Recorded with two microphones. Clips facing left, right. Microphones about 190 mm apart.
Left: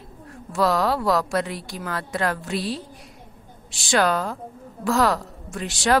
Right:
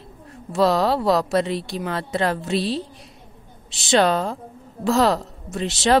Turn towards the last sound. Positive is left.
turn(degrees=-25)  # may be behind; listen again after turning